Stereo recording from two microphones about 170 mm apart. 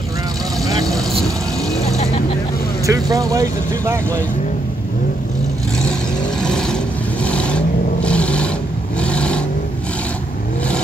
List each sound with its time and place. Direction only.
2.9 s speech: 20° right (ahead or behind)
6.4 s vehicle: 5° left (ahead or behind)